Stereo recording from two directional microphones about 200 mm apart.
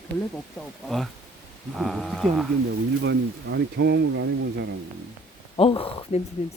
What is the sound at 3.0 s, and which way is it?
Speech, 60° right (ahead or behind).